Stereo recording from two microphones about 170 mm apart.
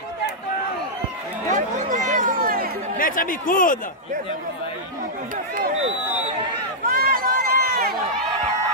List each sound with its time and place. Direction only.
1.5 s a sound: 45° right (ahead or behind)
3.0 s speech: 55° left (ahead or behind)
6.9 s run: 60° right (ahead or behind)